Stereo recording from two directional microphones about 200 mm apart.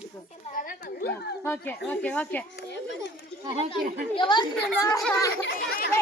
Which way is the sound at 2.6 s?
60° left (ahead or behind).